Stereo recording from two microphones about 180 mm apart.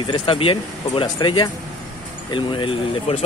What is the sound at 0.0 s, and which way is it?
Speech, 25° left (ahead or behind).